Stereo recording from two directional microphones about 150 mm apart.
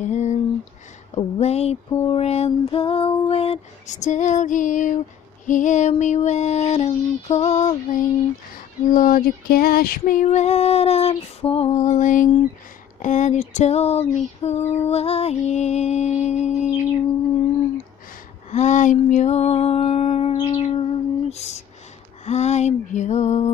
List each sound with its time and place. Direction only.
0.0 s a sound: 50° left (ahead or behind)
1.1 s female singing: 45° left (ahead or behind)
8.5 s female singing: 65° left (ahead or behind)
18.5 s female singing: 50° left (ahead or behind)
20.3 s music: 30° left (ahead or behind)
20.8 s a sound: 45° left (ahead or behind)
22.2 s female singing: 50° left (ahead or behind)